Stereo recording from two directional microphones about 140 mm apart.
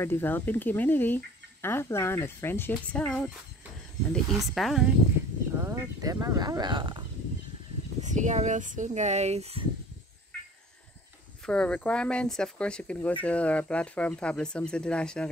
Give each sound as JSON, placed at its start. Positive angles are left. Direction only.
{"t": 0.0, "sound": "speech", "side_deg": 15}
{"t": 5.6, "sound": "speech", "side_deg": -20}
{"t": 8.0, "sound": "speech", "side_deg": -60}
{"t": 11.4, "sound": "speech", "side_deg": 5}